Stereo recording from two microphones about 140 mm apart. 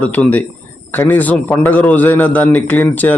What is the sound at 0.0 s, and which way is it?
A man's voice, 10° left (ahead or behind).